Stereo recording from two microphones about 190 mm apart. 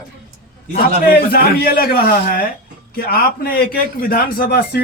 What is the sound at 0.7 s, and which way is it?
Speech, 55° left (ahead or behind).